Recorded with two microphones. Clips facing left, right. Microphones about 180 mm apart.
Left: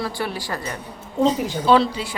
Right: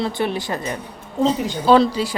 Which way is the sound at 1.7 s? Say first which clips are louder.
Right 3 dB; 40° right (ahead or behind).